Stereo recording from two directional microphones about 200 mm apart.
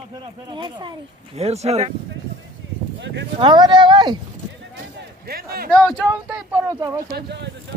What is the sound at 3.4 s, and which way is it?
Speech, 20° right (ahead or behind).